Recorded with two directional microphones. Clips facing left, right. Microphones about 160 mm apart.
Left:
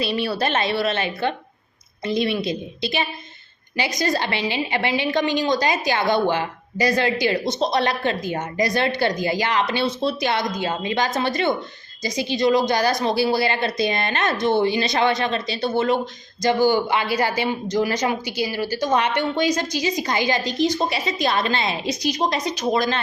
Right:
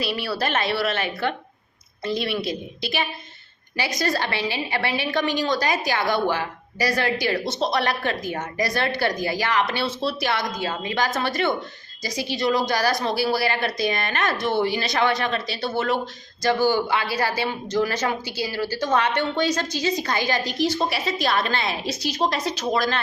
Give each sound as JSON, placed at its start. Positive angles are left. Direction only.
{"t": 0.0, "sound": "a woman's voice", "side_deg": 20}